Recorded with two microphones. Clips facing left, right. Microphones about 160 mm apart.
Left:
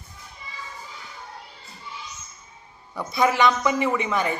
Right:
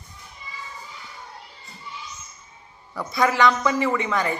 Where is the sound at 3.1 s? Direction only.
20° left (ahead or behind).